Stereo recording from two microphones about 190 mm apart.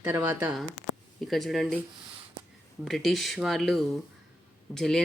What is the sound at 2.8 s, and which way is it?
Speech, centre (ahead or behind).